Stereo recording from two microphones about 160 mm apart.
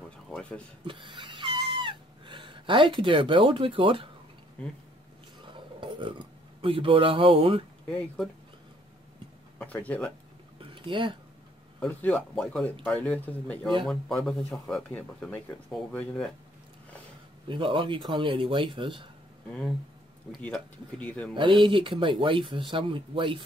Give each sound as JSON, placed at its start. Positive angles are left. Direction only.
{"t": 0.3, "sound": "speech", "side_deg": 5}
{"t": 0.8, "sound": "cat", "side_deg": -30}
{"t": 5.5, "sound": "speech", "side_deg": -30}
{"t": 9.6, "sound": "speech", "side_deg": 10}
{"t": 10.6, "sound": "a sound", "side_deg": -30}
{"t": 11.8, "sound": "speech", "side_deg": 5}
{"t": 17.5, "sound": "speech", "side_deg": -30}
{"t": 20.4, "sound": "speech", "side_deg": 10}
{"t": 21.4, "sound": "speech", "side_deg": -30}